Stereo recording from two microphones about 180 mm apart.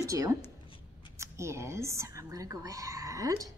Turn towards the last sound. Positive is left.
turn(degrees=-20)  # may be behind; listen again after turning